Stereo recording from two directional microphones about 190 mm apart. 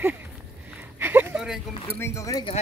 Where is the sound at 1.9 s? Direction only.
15° left (ahead or behind).